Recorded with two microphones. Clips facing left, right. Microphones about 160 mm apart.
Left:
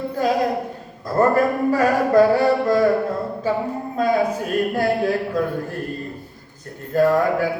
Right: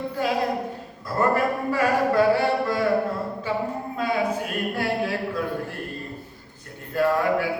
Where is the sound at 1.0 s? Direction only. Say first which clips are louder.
Left 5 dB; 40° left (ahead or behind).